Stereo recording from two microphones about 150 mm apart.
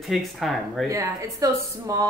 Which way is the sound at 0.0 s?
Centre (ahead or behind).